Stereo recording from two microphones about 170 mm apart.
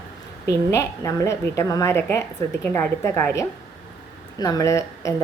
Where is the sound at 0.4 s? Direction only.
15° left (ahead or behind).